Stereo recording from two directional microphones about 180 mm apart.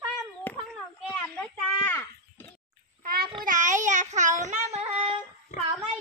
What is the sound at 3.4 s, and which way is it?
Child singing, 45° right (ahead or behind).